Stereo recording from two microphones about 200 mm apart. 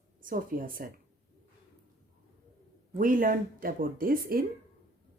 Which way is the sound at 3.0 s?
45° right (ahead or behind).